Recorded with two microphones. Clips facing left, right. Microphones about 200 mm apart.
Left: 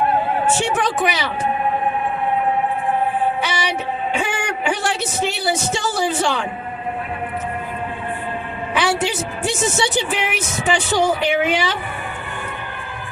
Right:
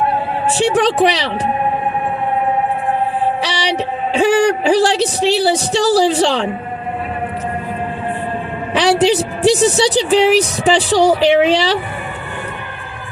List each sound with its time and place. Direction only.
0.4 s a woman's voice: 35° right (ahead or behind)
3.4 s music: 35° right (ahead or behind)
5.2 s a woman's voice: 30° right (ahead or behind)
8.7 s a woman's voice: 35° right (ahead or behind)